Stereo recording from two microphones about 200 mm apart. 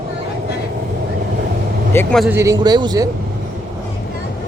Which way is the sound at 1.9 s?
10° left (ahead or behind).